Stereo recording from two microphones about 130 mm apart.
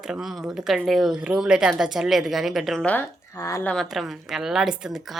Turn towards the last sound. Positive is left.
turn(degrees=-5)  # may be behind; listen again after turning